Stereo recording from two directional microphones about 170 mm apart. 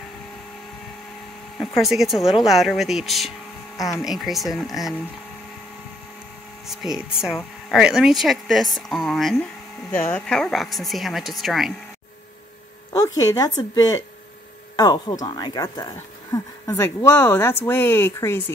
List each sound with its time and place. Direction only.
1.8 s speech: centre (ahead or behind)
3.7 s speech: 20° left (ahead or behind)
4.0 s speech: centre (ahead or behind)
6.7 s speech: centre (ahead or behind)
12.9 s speech: 20° left (ahead or behind)